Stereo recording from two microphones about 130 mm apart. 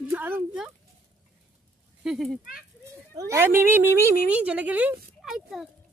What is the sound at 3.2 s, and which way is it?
A child's voice, 20° right (ahead or behind).